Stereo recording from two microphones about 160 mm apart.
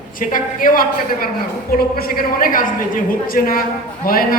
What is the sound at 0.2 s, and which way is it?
A woman's voice, 60° left (ahead or behind).